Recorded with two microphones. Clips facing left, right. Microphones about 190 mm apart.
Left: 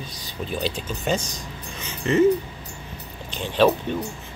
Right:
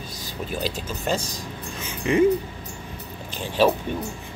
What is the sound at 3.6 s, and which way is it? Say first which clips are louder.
Speech: left 1 dB; 10° right (ahead or behind).